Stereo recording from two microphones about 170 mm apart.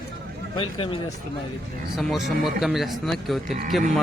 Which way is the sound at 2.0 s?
Centre (ahead or behind).